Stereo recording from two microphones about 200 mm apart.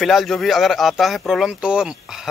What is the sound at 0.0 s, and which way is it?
Speech, centre (ahead or behind).